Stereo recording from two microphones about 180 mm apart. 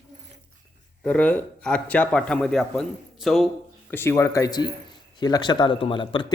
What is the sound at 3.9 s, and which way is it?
Speech, 15° left (ahead or behind).